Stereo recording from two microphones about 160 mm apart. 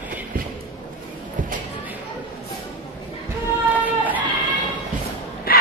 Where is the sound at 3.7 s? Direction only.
10° right (ahead or behind).